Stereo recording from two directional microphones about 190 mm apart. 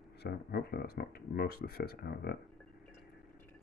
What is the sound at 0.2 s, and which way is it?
Speech, 55° left (ahead or behind).